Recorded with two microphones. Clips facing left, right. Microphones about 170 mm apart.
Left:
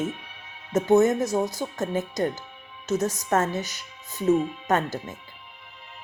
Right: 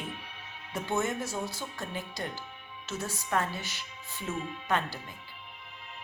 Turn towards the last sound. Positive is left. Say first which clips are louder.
# left 7 dB
turn(degrees=45)  # may be behind; listen again after turning